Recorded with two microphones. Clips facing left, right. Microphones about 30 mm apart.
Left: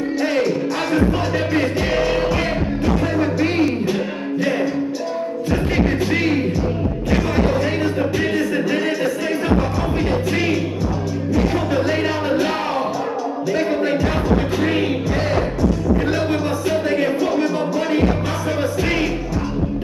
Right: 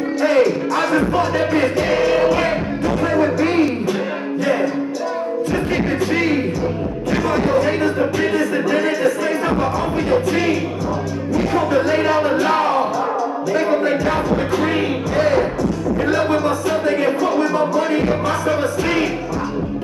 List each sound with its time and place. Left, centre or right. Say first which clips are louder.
0.2 s music: right 5 dB; centre
6.1 s music: right 2 dB; centre
7.5 s music: right 3 dB; centre
10.3 s music: right 1 dB; centre
16.8 s music: right 1 dB; centre